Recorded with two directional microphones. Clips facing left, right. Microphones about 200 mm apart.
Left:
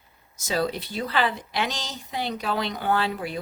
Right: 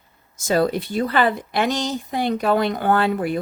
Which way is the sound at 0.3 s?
50° right (ahead or behind).